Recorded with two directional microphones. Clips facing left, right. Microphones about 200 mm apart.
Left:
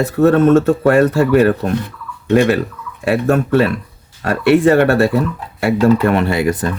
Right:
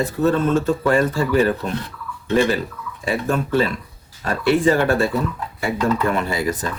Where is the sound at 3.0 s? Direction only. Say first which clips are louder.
Left 7 dB; 70° left (ahead or behind).